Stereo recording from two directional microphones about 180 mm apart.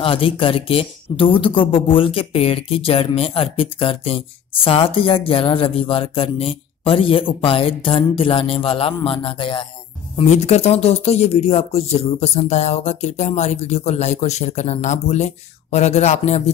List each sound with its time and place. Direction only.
0.0 s speech: 30° left (ahead or behind)
10.1 s speech: 40° left (ahead or behind)